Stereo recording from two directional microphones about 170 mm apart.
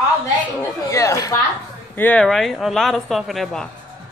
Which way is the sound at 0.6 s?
20° left (ahead or behind).